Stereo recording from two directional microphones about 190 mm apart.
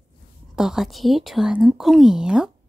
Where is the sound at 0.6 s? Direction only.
Centre (ahead or behind).